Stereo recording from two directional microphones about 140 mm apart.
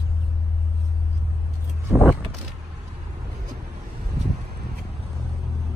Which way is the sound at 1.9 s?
Centre (ahead or behind).